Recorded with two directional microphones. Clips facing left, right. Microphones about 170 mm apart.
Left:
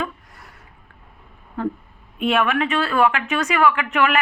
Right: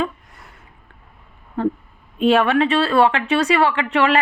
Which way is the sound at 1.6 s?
30° right (ahead or behind).